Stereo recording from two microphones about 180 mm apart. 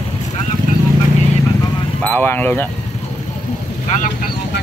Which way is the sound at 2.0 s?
10° left (ahead or behind).